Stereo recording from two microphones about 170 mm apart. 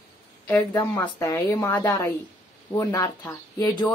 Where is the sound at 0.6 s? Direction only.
20° left (ahead or behind).